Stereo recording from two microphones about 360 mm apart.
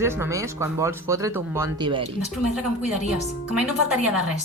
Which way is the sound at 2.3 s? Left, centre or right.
Centre.